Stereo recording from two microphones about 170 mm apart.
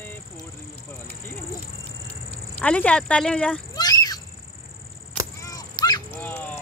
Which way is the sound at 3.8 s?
25° left (ahead or behind).